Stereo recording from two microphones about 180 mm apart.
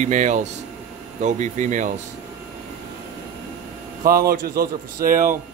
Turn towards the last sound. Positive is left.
turn(degrees=-50)  # may be behind; listen again after turning